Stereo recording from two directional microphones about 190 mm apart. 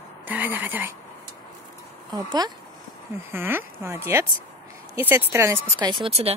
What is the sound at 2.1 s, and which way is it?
Speech, 20° right (ahead or behind).